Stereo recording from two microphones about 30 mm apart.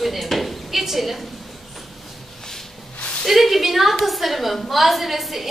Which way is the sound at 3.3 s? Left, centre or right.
Centre.